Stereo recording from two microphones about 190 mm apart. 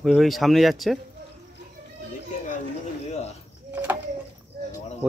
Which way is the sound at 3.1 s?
35° left (ahead or behind).